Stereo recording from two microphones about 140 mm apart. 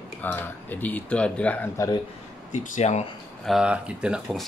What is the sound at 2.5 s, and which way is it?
Speech, 65° left (ahead or behind).